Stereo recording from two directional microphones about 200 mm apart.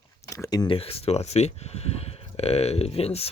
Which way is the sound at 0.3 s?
15° left (ahead or behind).